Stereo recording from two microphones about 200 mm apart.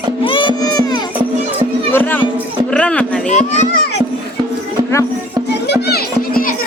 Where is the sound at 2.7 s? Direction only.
5° left (ahead or behind).